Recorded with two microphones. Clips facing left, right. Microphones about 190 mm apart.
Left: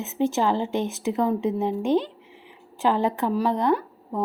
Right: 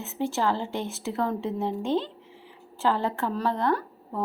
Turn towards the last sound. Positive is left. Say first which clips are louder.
# left 4 dB
turn(degrees=15)  # may be behind; listen again after turning